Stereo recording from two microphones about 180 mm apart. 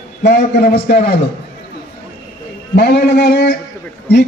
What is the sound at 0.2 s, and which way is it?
A man's voice, 65° left (ahead or behind).